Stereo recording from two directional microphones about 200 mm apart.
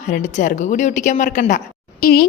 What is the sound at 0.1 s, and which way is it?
A woman's voice, 40° left (ahead or behind).